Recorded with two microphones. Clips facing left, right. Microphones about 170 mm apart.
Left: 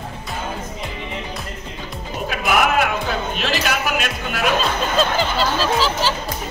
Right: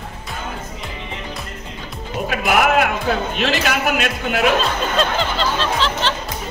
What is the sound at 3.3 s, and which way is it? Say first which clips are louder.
A man's voice: right 2 dB; 55° right (ahead or behind).